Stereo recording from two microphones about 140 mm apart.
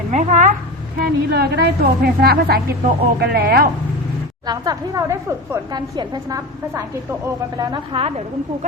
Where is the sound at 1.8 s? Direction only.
90° right.